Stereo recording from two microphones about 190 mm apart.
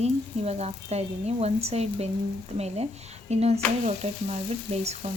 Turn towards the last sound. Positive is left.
turn(degrees=-35)  # may be behind; listen again after turning